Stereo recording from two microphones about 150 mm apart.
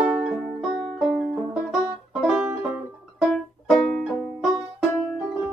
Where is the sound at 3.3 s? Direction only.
5° left (ahead or behind).